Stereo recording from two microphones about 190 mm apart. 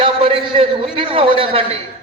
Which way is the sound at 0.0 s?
25° right (ahead or behind).